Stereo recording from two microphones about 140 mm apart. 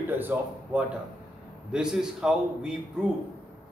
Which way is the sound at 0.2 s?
15° right (ahead or behind).